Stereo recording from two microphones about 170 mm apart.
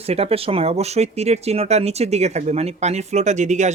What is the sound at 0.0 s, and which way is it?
Speech, 35° right (ahead or behind).